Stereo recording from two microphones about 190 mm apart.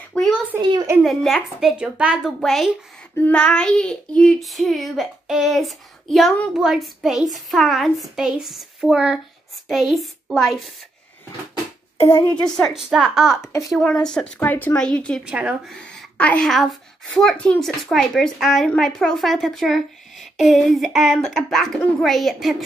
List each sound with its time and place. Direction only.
0.6 s a child's voice: 25° right (ahead or behind)
1.0 s a woman's voice: centre (ahead or behind)
12.0 s a woman's voice: 15° left (ahead or behind)
12.4 s a woman's voice: centre (ahead or behind)
15.2 s a woman's voice: 5° right (ahead or behind)